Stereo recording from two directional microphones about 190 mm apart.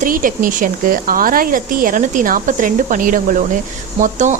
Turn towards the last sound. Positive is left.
turn(degrees=-40)  # may be behind; listen again after turning